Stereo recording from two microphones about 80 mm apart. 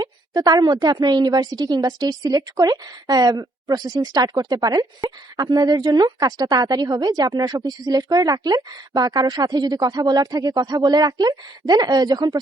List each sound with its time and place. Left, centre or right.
0.0 s a woman's voice: right